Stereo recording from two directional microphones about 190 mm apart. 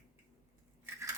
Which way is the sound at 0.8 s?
15° right (ahead or behind).